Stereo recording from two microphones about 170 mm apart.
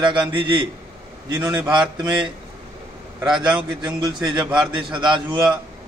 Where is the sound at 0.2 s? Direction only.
30° right (ahead or behind).